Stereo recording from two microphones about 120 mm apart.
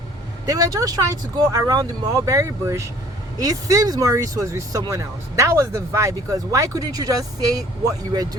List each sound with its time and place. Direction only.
0.4 s speech: 30° right (ahead or behind)